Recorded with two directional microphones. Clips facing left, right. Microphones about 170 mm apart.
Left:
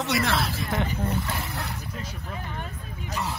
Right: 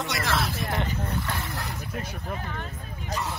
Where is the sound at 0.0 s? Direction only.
Centre (ahead or behind).